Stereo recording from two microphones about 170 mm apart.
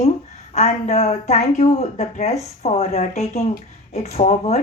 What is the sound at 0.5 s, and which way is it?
A woman's voice, 40° left (ahead or behind).